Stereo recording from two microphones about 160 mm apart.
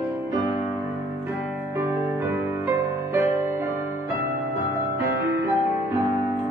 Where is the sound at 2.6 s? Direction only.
15° right (ahead or behind).